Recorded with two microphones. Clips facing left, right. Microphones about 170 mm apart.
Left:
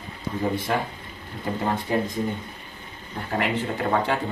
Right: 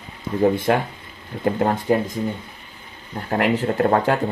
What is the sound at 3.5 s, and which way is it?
Speech, 50° right (ahead or behind).